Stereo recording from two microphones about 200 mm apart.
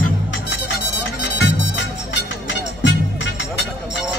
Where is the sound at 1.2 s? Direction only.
60° left (ahead or behind).